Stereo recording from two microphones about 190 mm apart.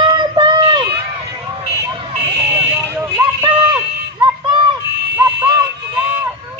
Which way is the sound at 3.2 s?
15° right (ahead or behind).